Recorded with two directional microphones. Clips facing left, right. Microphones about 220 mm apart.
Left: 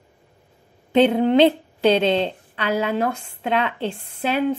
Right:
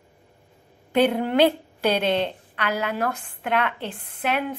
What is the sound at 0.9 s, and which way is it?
A woman's voice, 20° left (ahead or behind).